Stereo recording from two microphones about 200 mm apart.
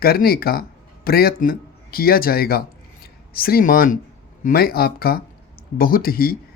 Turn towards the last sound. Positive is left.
turn(degrees=50)  # may be behind; listen again after turning